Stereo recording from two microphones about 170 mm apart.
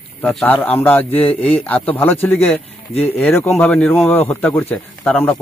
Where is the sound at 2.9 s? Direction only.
35° left (ahead or behind).